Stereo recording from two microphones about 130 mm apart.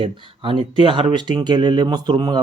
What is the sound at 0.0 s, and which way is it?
Speech, 40° right (ahead or behind).